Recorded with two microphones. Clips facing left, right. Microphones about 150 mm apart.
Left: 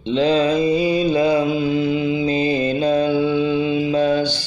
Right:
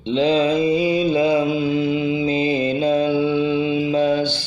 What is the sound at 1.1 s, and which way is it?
Mantra, 25° right (ahead or behind).